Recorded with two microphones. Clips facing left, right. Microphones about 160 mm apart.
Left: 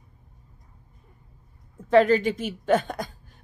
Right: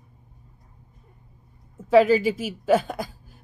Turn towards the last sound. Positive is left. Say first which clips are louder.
# right 2 dB
turn(degrees=-5)  # may be behind; listen again after turning